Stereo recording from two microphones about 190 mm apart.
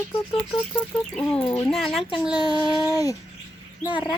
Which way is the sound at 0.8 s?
5° left (ahead or behind).